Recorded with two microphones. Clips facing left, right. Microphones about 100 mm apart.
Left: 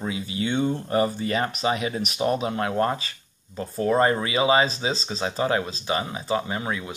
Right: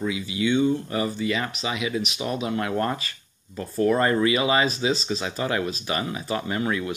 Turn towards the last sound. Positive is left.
turn(degrees=20)  # may be behind; listen again after turning